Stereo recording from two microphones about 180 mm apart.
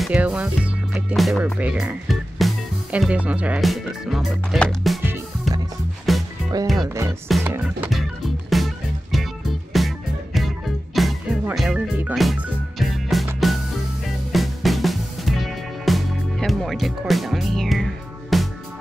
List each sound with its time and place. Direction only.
0.0 s speech: 5° right (ahead or behind)
6.1 s music: centre (ahead or behind)
6.9 s music: 15° right (ahead or behind)
7.2 s music: centre (ahead or behind)